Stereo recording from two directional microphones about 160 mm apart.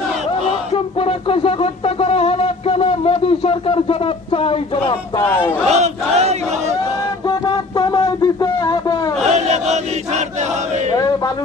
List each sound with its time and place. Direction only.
1.0 s a sound: 35° left (ahead or behind)
4.3 s speech: 35° left (ahead or behind)
5.2 s speech: 10° left (ahead or behind)
5.7 s battle cry: 45° right (ahead or behind)
7.2 s a sound: 25° left (ahead or behind)
9.2 s chant: 45° right (ahead or behind)